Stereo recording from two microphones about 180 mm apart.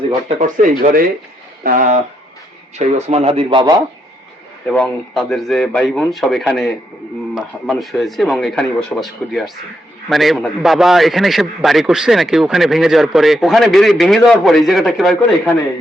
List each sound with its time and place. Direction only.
0.3 s speech: 45° right (ahead or behind); by 3.8 s 25° right (ahead or behind)
4.6 s a man's voice: 5° left (ahead or behind)